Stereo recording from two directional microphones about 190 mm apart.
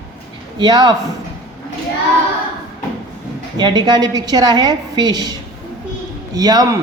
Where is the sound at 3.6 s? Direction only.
25° right (ahead or behind).